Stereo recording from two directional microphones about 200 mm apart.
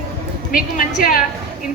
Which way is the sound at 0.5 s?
45° left (ahead or behind).